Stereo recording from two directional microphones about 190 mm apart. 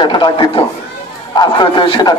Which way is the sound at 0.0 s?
25° left (ahead or behind).